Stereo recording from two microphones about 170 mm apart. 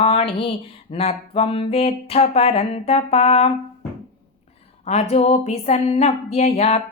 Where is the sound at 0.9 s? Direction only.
40° left (ahead or behind).